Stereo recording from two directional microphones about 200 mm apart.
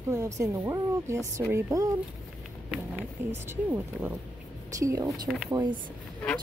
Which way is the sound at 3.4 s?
10° right (ahead or behind).